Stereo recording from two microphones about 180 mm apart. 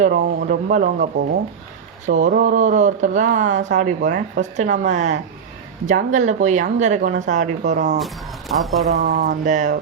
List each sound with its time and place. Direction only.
0.2 s speech: 55° right (ahead or behind)
2.0 s a woman's voice: 45° right (ahead or behind)
8.0 s speech: centre (ahead or behind)
9.0 s speech: 45° right (ahead or behind)